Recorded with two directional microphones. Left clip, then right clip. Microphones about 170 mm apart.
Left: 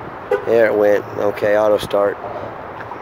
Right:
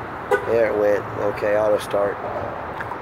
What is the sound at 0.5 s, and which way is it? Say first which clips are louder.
Speech: left 7 dB; 50° left (ahead or behind).